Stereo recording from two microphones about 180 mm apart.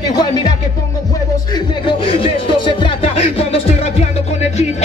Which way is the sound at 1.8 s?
30° left (ahead or behind).